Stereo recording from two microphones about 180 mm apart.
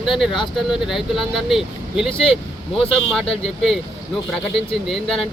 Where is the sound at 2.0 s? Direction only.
30° left (ahead or behind).